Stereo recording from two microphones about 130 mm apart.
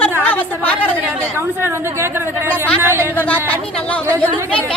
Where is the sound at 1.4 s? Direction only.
20° right (ahead or behind).